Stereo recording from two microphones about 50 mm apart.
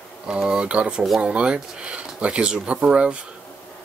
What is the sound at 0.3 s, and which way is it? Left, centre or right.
Speech, centre.